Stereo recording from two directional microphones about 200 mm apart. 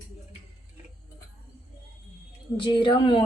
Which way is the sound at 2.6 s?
25° left (ahead or behind).